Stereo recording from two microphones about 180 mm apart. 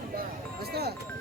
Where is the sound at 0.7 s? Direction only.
60° right (ahead or behind).